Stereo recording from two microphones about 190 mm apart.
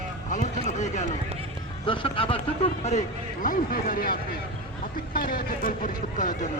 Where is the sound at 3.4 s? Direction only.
45° left (ahead or behind).